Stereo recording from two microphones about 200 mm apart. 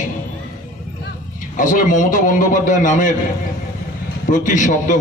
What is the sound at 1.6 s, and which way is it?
A man's voice, 40° left (ahead or behind).